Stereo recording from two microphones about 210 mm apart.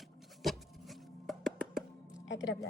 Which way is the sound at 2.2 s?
60° left (ahead or behind).